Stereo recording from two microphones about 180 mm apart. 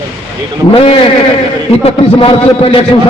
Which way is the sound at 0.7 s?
30° left (ahead or behind).